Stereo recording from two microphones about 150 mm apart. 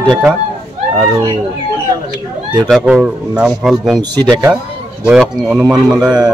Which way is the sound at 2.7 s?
5° right (ahead or behind).